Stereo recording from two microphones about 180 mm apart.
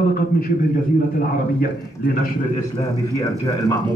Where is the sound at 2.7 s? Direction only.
20° left (ahead or behind).